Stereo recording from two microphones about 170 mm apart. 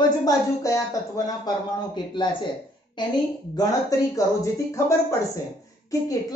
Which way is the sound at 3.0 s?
25° left (ahead or behind).